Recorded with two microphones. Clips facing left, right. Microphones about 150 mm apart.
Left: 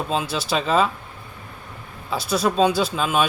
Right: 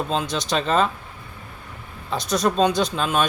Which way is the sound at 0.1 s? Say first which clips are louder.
Even; 5° left (ahead or behind).